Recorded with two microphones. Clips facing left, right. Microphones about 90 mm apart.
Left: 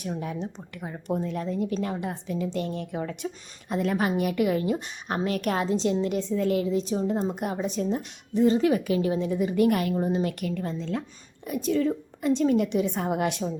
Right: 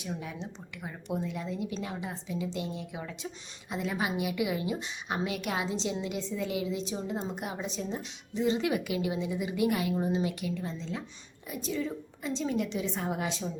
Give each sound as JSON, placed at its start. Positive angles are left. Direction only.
{"t": 0.0, "sound": "a woman's voice", "side_deg": 55}
{"t": 3.7, "sound": "a woman's voice", "side_deg": 55}